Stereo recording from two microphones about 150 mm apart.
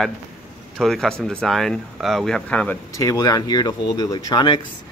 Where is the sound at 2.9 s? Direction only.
25° left (ahead or behind).